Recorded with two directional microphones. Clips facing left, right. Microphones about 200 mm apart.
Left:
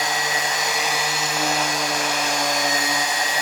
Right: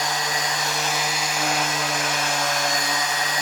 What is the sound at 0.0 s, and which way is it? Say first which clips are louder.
Vacuum cleaner: left 1 dB; 20° left (ahead or behind).